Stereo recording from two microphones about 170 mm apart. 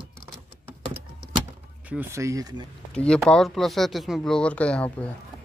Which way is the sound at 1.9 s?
10° right (ahead or behind).